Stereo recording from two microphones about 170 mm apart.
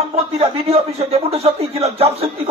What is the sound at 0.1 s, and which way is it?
Speech, 35° right (ahead or behind).